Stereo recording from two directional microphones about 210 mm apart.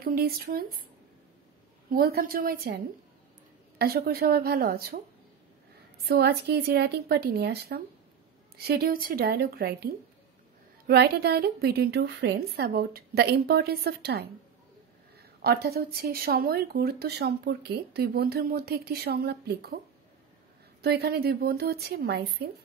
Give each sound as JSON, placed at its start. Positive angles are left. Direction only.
{"t": 0.0, "sound": "speech", "side_deg": -45}
{"t": 1.9, "sound": "speech", "side_deg": -45}
{"t": 6.0, "sound": "speech", "side_deg": -50}
{"t": 10.9, "sound": "speech", "side_deg": -50}
{"t": 15.4, "sound": "speech", "side_deg": -50}
{"t": 20.8, "sound": "speech", "side_deg": -50}